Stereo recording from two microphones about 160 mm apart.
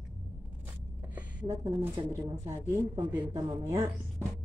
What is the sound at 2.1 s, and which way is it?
Speech, 15° right (ahead or behind).